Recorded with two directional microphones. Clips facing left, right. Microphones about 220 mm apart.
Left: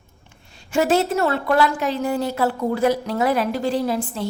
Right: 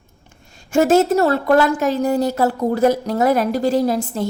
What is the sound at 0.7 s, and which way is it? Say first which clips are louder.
A woman's voice: right 5 dB; 45° right (ahead or behind).